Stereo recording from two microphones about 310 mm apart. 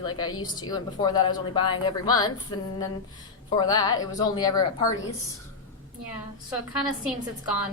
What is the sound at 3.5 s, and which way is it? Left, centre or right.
A woman's voice, centre.